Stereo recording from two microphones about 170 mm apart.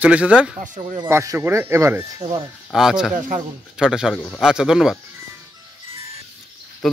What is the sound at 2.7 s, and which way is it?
Speech, centre (ahead or behind).